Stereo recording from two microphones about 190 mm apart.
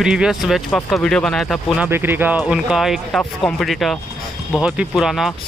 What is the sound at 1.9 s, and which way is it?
Speech, 10° right (ahead or behind).